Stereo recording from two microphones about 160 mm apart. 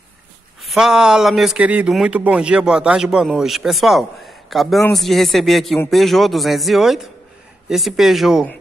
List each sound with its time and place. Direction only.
0.6 s a man's voice: centre (ahead or behind)